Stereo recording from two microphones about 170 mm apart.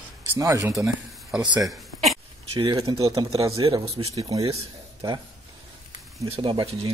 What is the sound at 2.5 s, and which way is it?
Speech, 25° right (ahead or behind).